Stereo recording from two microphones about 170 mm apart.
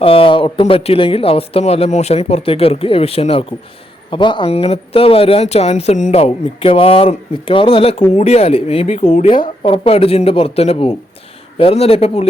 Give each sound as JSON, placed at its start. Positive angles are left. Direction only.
{"t": 0.0, "sound": "speech", "side_deg": 35}